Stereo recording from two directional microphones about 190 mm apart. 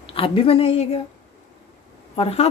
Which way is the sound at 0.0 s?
30° left (ahead or behind).